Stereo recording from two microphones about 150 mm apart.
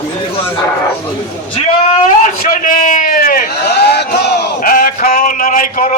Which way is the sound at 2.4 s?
65° left (ahead or behind).